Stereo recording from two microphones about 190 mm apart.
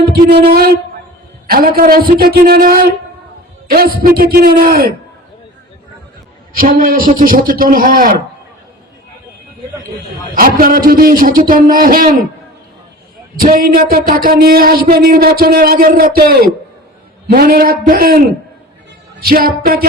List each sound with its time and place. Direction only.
0.1 s a man's voice: 55° right (ahead or behind)
6.5 s speech: 50° right (ahead or behind)
10.3 s speech: 50° right (ahead or behind)
13.4 s speech: 50° right (ahead or behind)